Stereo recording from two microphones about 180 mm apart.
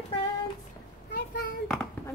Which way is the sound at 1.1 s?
55° left (ahead or behind).